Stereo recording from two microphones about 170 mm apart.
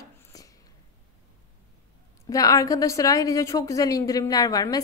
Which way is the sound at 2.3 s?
20° left (ahead or behind).